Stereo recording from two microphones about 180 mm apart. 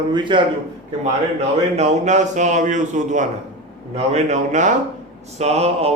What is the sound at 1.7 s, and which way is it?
A man's voice, 40° right (ahead or behind).